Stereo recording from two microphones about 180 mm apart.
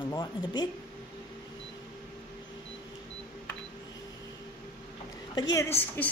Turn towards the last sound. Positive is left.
turn(degrees=10)  # may be behind; listen again after turning